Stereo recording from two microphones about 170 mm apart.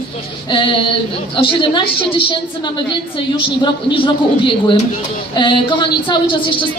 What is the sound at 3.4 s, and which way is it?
A woman's voice, 30° left (ahead or behind).